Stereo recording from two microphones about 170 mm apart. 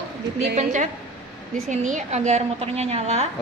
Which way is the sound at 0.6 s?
45° right (ahead or behind).